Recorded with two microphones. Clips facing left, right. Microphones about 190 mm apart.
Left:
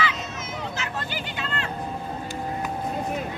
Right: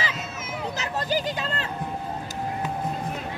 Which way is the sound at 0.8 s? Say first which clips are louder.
Right 5 dB; 40° right (ahead or behind).